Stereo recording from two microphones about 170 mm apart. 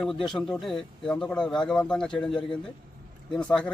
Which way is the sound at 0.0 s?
5° left (ahead or behind).